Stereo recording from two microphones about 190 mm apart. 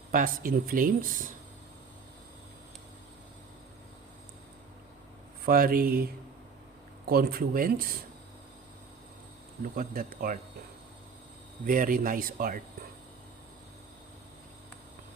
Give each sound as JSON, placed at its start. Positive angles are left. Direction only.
{"t": 0.1, "sound": "speech", "side_deg": -45}
{"t": 5.5, "sound": "speech", "side_deg": -50}
{"t": 7.1, "sound": "speech", "side_deg": -55}
{"t": 9.7, "sound": "speech", "side_deg": -50}
{"t": 11.6, "sound": "speech", "side_deg": -45}